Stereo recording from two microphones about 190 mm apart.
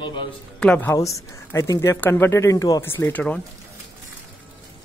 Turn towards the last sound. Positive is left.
turn(degrees=5)  # may be behind; listen again after turning